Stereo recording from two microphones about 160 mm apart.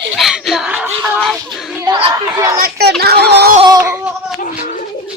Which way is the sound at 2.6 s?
80° right.